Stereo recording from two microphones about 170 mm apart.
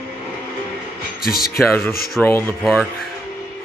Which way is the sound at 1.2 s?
60° left (ahead or behind).